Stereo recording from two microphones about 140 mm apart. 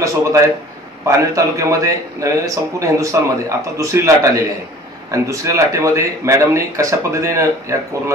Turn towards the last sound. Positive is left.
turn(degrees=-20)  # may be behind; listen again after turning